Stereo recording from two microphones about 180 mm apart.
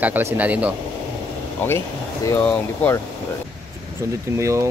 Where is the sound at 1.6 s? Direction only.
10° left (ahead or behind).